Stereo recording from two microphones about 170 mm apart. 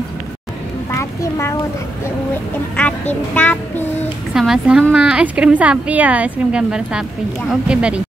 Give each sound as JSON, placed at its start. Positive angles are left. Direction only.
{"t": 0.9, "sound": "a sound", "side_deg": 15}
{"t": 2.8, "sound": "a child's voice", "side_deg": 5}
{"t": 4.3, "sound": "a woman's voice", "side_deg": -5}